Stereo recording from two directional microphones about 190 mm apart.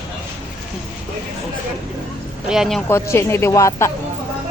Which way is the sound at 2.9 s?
15° left (ahead or behind).